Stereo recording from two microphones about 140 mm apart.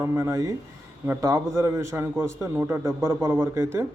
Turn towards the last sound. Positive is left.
turn(degrees=-20)  # may be behind; listen again after turning